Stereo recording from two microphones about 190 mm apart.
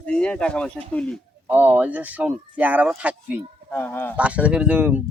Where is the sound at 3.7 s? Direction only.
10° left (ahead or behind).